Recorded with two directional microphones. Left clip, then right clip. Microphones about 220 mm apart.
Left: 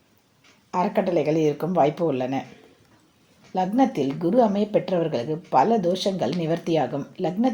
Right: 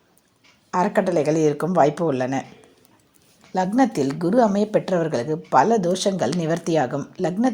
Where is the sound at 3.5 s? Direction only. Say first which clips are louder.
Right 2 dB; 30° right (ahead or behind).